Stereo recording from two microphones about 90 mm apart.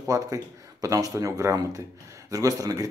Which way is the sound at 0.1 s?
40° right (ahead or behind).